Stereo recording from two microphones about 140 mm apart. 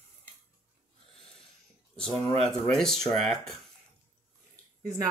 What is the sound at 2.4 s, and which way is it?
Speech, 5° left (ahead or behind).